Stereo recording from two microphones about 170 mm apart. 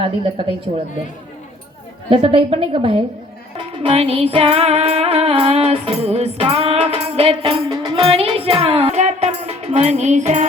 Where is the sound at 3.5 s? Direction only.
30° right (ahead or behind).